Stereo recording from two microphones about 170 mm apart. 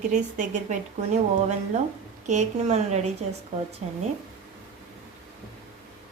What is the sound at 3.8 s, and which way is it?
Speech, 40° right (ahead or behind).